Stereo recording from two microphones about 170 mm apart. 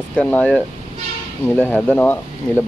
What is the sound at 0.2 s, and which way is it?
Speech, 10° left (ahead or behind).